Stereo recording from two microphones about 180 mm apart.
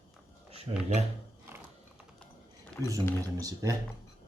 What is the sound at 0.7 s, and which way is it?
Speech, 30° right (ahead or behind).